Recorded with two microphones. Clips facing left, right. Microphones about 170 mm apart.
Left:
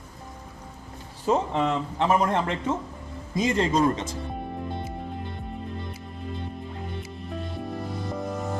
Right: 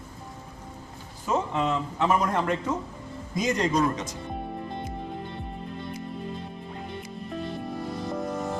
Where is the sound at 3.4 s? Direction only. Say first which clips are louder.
Left 2 dB; 30° left (ahead or behind).